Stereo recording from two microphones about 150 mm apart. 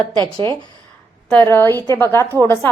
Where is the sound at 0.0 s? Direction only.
30° right (ahead or behind).